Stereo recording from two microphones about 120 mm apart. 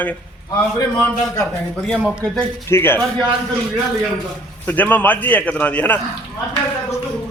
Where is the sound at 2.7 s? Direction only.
20° left (ahead or behind).